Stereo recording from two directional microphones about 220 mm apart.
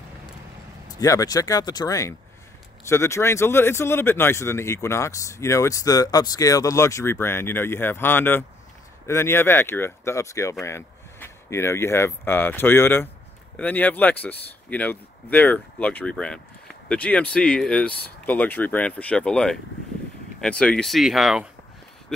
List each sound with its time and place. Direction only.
0.8 s speech: 15° left (ahead or behind); by 21.5 s centre (ahead or behind)